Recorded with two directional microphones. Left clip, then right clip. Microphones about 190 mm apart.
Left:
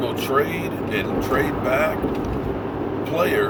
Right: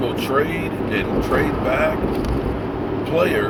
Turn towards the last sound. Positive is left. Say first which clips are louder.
# right 1 dB
turn(degrees=20)  # may be behind; listen again after turning